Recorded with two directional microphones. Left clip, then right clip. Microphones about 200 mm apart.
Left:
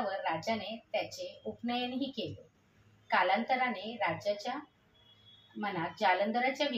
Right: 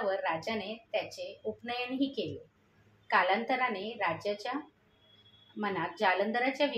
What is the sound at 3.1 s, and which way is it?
A woman's voice, 35° right (ahead or behind).